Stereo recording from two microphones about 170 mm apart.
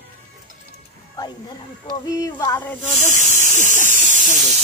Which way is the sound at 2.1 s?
20° left (ahead or behind).